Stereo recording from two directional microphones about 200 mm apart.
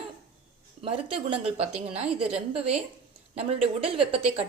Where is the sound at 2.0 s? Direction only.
5° right (ahead or behind).